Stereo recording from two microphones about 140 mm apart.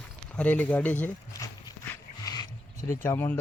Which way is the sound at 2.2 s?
25° left (ahead or behind).